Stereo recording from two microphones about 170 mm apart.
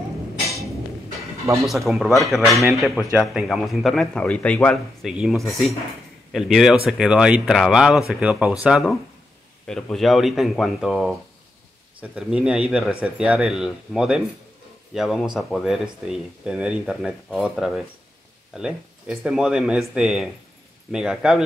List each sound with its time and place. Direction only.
1.4 s speech: 20° right (ahead or behind)
1.7 s speech: centre (ahead or behind)
5.0 s speech: centre (ahead or behind)